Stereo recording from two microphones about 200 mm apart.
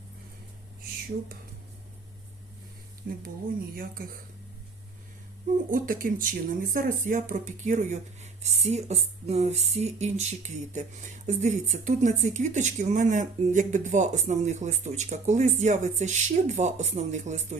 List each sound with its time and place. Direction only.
3.8 s speech: 45° right (ahead or behind)
5.7 s speech: 45° right (ahead or behind)